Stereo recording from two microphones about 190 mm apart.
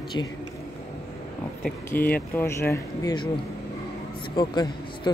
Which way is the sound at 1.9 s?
10° left (ahead or behind).